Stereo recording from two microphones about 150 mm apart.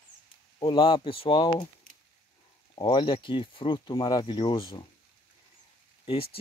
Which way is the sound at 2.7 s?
30° left (ahead or behind).